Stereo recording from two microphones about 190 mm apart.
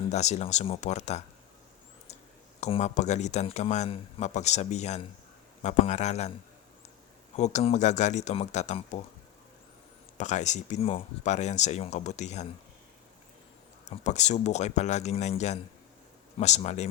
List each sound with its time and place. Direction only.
0.1 s a man's voice: 35° left (ahead or behind)
2.6 s a man's voice: 35° left (ahead or behind)
7.3 s a man's voice: 35° left (ahead or behind)
10.2 s a man's voice: 40° left (ahead or behind)
14.0 s a man's voice: 35° left (ahead or behind)